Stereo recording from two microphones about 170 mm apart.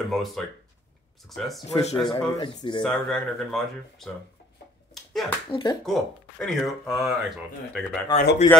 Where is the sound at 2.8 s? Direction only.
5° left (ahead or behind).